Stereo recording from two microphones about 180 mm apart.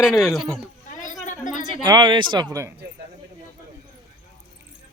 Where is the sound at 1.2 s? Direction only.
45° left (ahead or behind).